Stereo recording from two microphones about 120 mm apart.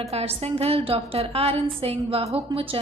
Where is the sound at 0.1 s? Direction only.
60° right (ahead or behind).